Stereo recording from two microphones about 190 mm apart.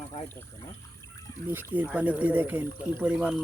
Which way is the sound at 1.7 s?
10° right (ahead or behind).